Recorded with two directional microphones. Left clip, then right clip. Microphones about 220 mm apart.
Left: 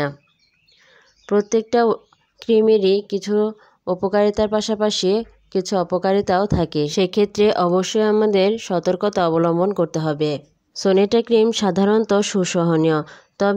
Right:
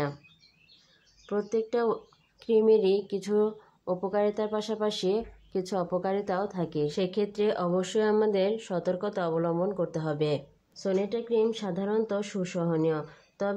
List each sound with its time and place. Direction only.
1.2 s speech: 40° left (ahead or behind)
10.7 s a woman's voice: 45° left (ahead or behind)